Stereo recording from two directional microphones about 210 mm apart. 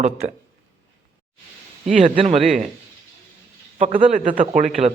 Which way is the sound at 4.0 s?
30° right (ahead or behind).